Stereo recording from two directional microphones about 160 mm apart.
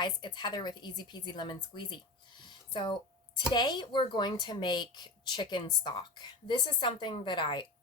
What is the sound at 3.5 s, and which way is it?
Speech, 25° left (ahead or behind).